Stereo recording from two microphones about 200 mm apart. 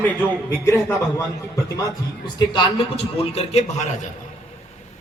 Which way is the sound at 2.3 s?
25° left (ahead or behind).